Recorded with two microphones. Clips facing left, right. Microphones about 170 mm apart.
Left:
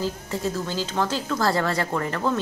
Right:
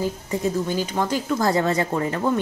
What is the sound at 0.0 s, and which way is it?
A woman's voice, 15° right (ahead or behind).